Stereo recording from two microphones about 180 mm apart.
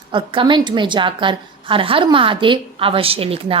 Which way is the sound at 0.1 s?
30° right (ahead or behind).